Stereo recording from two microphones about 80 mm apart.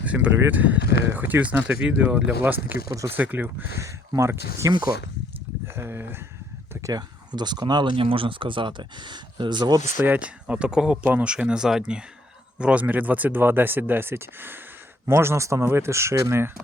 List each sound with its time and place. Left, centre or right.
0.0 s speech: centre
3.8 s speech: right
5.7 s speech: right
6.8 s speech: right
10.2 s speech: centre; by 16.5 s right